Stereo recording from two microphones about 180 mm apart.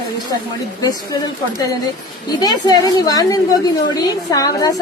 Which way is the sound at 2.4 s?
20° left (ahead or behind).